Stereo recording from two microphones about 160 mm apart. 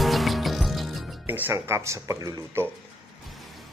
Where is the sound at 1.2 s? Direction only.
15° right (ahead or behind).